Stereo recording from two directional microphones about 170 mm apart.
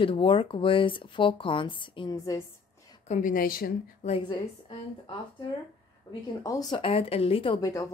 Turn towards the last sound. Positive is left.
turn(degrees=20)  # may be behind; listen again after turning